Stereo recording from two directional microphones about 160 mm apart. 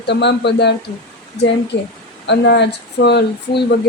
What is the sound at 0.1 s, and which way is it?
Speech, 90° left.